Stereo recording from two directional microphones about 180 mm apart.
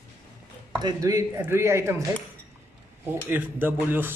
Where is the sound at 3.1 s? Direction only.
10° right (ahead or behind).